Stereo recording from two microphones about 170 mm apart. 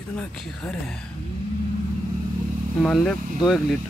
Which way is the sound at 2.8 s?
5° left (ahead or behind).